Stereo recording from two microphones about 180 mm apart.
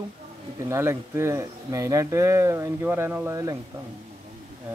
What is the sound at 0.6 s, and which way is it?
Speech, 15° right (ahead or behind).